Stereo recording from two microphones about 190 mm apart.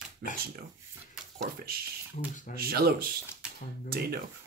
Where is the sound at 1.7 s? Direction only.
55° right (ahead or behind).